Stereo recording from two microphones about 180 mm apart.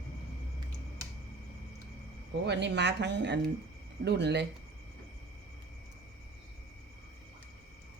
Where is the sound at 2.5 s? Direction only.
75° right (ahead or behind).